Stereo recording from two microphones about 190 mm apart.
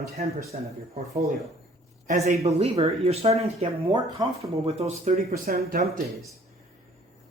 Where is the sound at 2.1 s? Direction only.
35° right (ahead or behind).